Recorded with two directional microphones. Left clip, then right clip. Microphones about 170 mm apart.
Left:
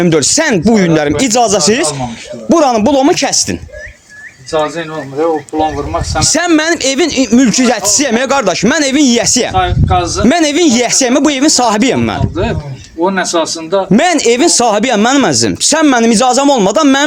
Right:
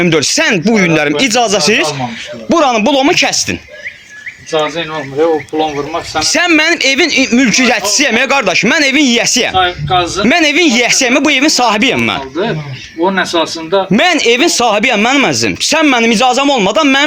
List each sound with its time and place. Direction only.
0.0 s a man's voice: 35° left (ahead or behind)
4.5 s speech: centre (ahead or behind)
6.1 s a man's voice: 35° left (ahead or behind)
9.6 s speech: 10° left (ahead or behind)
10.2 s a man's voice: 35° left (ahead or behind)
13.3 s speech: 10° left (ahead or behind)
13.9 s speech: 40° left (ahead or behind)